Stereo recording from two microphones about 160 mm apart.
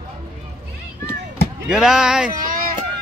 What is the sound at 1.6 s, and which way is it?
Speech, 5° right (ahead or behind).